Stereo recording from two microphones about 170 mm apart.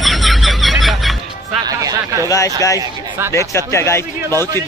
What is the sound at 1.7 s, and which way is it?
Speech, 20° right (ahead or behind).